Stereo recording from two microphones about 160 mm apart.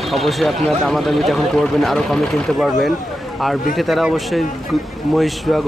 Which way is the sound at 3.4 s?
Centre (ahead or behind).